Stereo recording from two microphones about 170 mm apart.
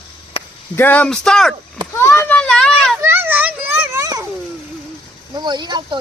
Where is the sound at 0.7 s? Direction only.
10° left (ahead or behind).